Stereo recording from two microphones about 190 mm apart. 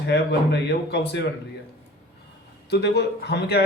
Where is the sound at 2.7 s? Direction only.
60° left (ahead or behind).